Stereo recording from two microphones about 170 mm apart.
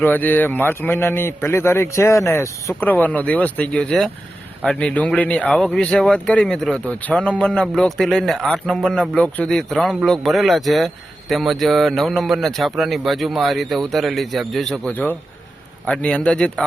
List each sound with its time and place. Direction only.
0.0 s a man's voice: 10° left (ahead or behind)